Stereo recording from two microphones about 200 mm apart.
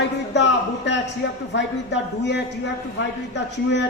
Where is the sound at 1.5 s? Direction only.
60° left (ahead or behind).